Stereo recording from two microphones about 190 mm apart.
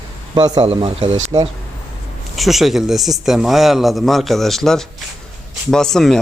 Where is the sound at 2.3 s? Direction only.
Centre (ahead or behind).